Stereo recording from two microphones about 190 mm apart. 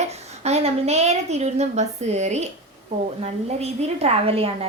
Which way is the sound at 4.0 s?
30° right (ahead or behind).